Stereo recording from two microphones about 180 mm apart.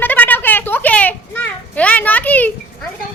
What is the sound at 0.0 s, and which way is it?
Children playing, 10° left (ahead or behind).